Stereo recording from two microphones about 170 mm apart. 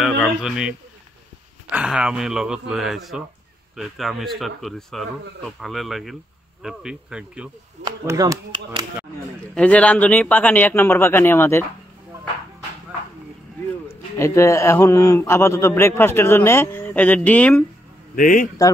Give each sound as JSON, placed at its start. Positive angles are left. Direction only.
{"t": 0.0, "sound": "speech", "side_deg": -5}
{"t": 7.8, "sound": "speech", "side_deg": -20}
{"t": 9.6, "sound": "a man's voice", "side_deg": 5}
{"t": 14.1, "sound": "a man's voice", "side_deg": 15}
{"t": 18.1, "sound": "a man's voice", "side_deg": 50}